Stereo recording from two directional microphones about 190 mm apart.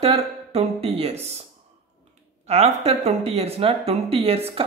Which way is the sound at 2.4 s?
35° right (ahead or behind).